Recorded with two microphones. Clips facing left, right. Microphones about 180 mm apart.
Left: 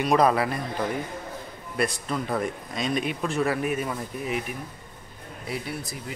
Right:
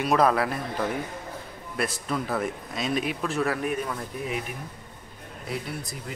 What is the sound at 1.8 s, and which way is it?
A man's voice, centre (ahead or behind).